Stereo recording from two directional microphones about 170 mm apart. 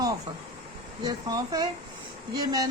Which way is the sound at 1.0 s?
20° right (ahead or behind).